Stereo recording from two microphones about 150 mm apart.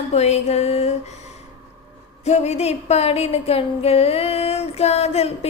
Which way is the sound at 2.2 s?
45° left (ahead or behind).